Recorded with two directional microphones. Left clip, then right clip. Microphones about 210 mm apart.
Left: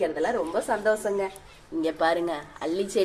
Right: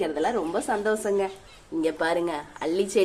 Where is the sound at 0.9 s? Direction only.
25° right (ahead or behind).